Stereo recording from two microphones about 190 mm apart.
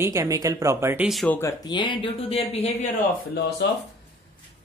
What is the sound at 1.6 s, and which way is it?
Speech, 25° left (ahead or behind).